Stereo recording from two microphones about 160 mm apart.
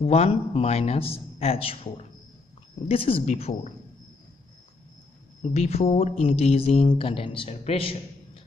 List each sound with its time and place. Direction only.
0.0 s speech: 40° left (ahead or behind)
5.4 s speech: 40° left (ahead or behind)